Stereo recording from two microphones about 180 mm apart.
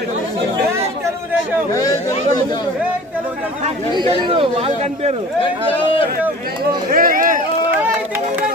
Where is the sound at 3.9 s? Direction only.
25° right (ahead or behind).